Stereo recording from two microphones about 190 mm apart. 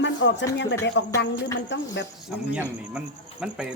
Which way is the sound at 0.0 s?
70° left (ahead or behind).